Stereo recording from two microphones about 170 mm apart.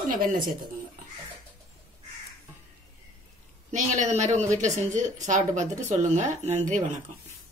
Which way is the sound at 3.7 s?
45° right (ahead or behind).